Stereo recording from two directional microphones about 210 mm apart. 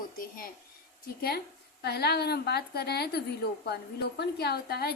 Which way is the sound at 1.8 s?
50° left (ahead or behind).